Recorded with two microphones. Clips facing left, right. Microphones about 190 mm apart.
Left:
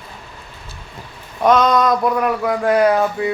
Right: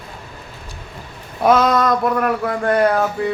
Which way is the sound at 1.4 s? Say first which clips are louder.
Left 1 dB; 5° right (ahead or behind).